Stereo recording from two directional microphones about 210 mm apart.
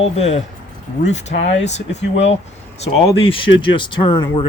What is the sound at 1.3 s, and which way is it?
Speech, 45° left (ahead or behind).